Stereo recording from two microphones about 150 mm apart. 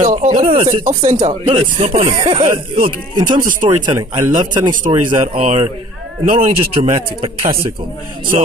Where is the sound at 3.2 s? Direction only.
65° right (ahead or behind).